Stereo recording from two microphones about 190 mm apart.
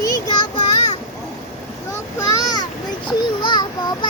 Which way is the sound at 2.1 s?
20° left (ahead or behind).